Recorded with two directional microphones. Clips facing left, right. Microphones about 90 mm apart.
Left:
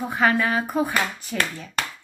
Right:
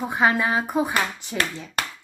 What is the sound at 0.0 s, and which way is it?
A woman's voice, 20° right (ahead or behind).